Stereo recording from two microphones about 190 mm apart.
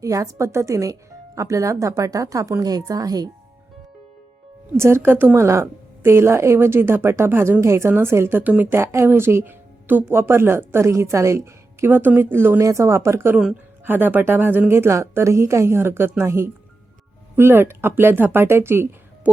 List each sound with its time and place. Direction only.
0.0 s speech: 15° right (ahead or behind)
4.8 s speech: 15° right (ahead or behind)